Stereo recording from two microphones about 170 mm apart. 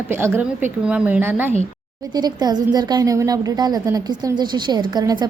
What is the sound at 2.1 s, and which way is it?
A woman's voice, 25° right (ahead or behind).